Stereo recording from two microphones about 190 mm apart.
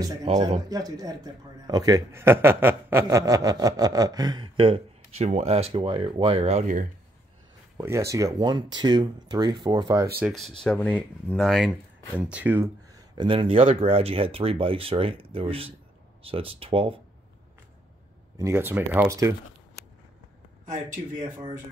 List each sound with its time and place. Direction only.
0.3 s speech: 30° right (ahead or behind)
0.7 s a man's voice: 20° right (ahead or behind); by 6.9 s 40° right (ahead or behind)
7.7 s a man's voice: 15° right (ahead or behind)
10.2 s speech: centre (ahead or behind)
13.1 s a man's voice: 25° right (ahead or behind)
18.4 s speech: 10° right (ahead or behind)